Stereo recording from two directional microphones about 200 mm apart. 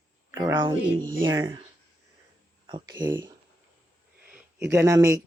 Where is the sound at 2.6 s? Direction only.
20° right (ahead or behind).